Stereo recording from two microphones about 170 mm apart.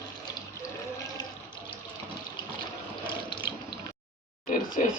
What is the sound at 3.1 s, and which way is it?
Water tap, 25° left (ahead or behind).